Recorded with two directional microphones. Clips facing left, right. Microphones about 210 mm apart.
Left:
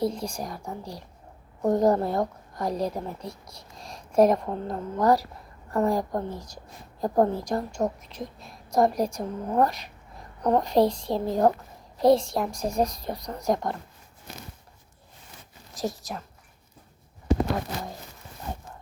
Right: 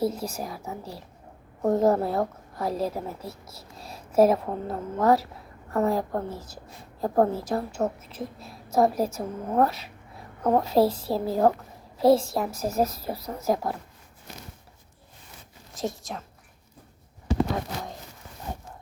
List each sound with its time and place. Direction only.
0.0 s a woman's voice: 5° right (ahead or behind)
15.7 s a woman's voice: centre (ahead or behind)